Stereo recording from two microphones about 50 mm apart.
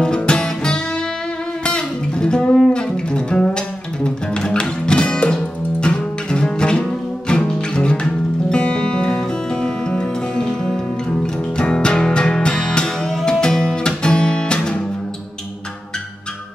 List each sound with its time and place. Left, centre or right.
0.0 s music: centre